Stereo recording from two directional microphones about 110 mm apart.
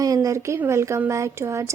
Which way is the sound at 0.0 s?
30° right (ahead or behind).